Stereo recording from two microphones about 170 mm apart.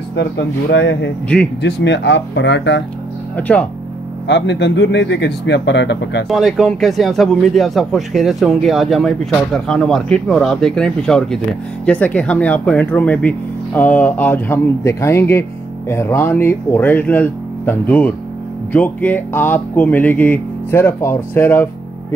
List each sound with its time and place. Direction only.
0.1 s speech: 90° left
3.3 s speech: 10° left (ahead or behind)
4.3 s speech: 90° left
6.2 s speech: centre (ahead or behind)